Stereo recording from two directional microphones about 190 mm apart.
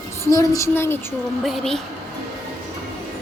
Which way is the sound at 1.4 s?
Centre (ahead or behind).